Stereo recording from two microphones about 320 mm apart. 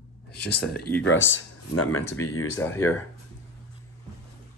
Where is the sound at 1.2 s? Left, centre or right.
Left.